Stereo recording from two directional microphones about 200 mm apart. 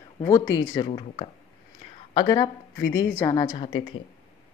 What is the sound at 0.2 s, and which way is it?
Speech, 15° left (ahead or behind).